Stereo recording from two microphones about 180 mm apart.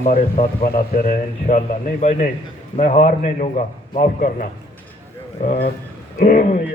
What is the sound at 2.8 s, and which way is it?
A man's voice, 40° left (ahead or behind).